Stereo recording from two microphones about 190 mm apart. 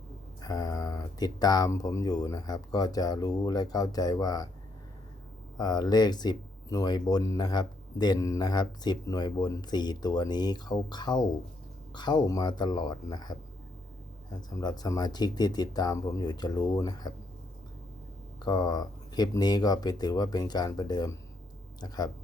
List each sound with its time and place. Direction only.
0.4 s speech: 20° left (ahead or behind)
5.5 s speech: 20° left (ahead or behind)
18.4 s speech: 20° left (ahead or behind)